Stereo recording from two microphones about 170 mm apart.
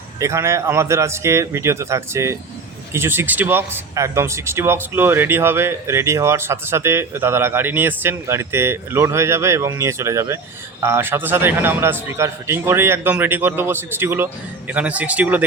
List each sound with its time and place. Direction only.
0.2 s speech: 15° right (ahead or behind)